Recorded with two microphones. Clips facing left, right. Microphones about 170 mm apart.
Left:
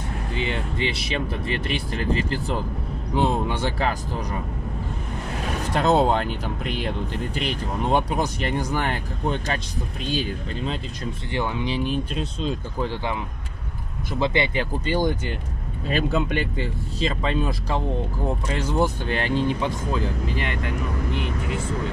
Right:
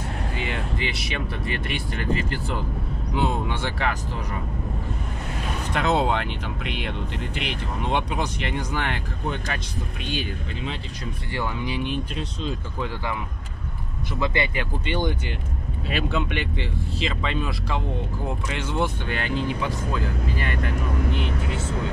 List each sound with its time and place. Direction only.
0.4 s speech: 30° left (ahead or behind)
5.7 s speech: 40° left (ahead or behind)
11.3 s speech: 25° left (ahead or behind)
14.2 s speech: 25° left (ahead or behind)